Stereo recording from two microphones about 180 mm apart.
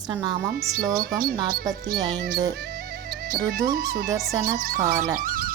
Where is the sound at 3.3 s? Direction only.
55° right (ahead or behind).